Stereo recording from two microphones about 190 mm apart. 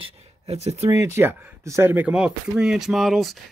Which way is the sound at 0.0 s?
35° right (ahead or behind).